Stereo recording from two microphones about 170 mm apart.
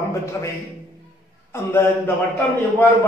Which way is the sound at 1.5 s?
15° left (ahead or behind).